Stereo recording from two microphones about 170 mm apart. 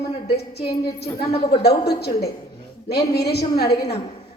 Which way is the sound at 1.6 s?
70° left (ahead or behind).